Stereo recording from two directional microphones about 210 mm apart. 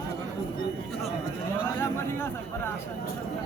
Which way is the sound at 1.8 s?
10° left (ahead or behind).